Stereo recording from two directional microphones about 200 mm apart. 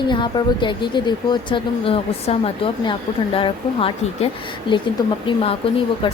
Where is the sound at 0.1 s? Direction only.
25° left (ahead or behind).